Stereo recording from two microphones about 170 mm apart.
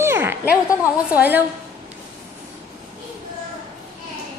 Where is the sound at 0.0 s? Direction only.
15° right (ahead or behind).